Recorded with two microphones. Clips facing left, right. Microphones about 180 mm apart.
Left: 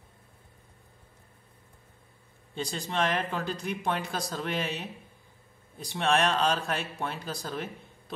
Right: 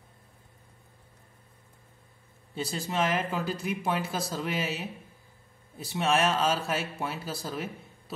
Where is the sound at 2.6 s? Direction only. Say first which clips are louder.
Right 1 dB; 5° right (ahead or behind).